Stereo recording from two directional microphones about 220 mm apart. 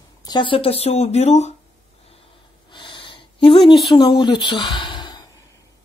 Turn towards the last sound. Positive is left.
turn(degrees=20)  # may be behind; listen again after turning